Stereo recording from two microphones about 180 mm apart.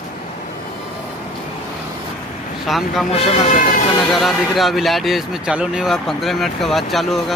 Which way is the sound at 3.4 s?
45° left (ahead or behind).